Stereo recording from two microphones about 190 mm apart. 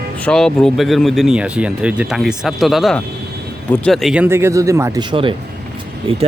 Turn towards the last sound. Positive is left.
turn(degrees=-30)  # may be behind; listen again after turning